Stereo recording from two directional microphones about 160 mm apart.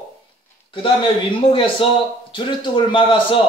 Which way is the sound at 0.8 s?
30° left (ahead or behind).